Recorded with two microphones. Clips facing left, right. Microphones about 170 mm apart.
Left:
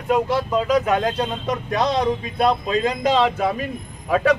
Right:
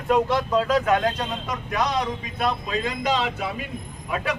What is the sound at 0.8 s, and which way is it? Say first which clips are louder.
Speech: left 2 dB; 25° left (ahead or behind).